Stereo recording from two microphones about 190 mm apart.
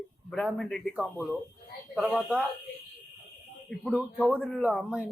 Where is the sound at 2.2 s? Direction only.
5° right (ahead or behind).